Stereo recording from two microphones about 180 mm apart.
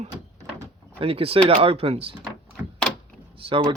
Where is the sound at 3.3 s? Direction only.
30° right (ahead or behind).